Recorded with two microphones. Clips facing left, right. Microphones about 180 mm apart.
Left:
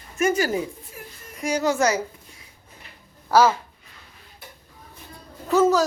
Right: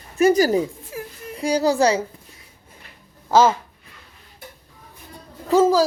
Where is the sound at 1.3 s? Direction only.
35° right (ahead or behind).